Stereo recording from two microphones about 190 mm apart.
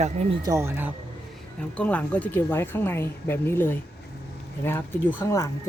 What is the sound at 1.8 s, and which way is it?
Speech, 5° left (ahead or behind).